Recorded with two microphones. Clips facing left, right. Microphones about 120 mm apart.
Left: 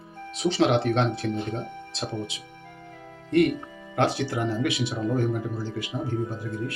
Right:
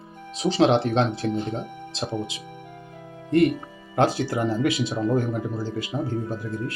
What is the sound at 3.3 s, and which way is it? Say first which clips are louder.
Speech: right 2 dB; 35° right (ahead or behind).